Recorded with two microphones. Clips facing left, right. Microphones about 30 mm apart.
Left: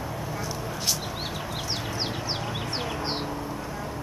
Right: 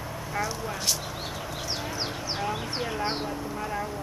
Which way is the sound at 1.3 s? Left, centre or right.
Centre.